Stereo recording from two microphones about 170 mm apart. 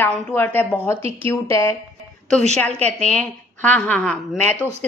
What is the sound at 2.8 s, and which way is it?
A woman's voice, 5° left (ahead or behind).